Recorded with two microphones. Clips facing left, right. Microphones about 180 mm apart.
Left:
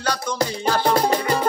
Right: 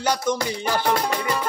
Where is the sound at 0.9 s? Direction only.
35° left (ahead or behind).